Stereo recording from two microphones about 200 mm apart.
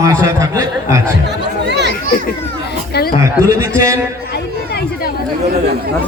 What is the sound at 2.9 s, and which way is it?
Speech, 50° left (ahead or behind).